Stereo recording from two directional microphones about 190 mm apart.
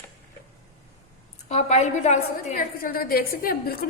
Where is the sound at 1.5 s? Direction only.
35° left (ahead or behind).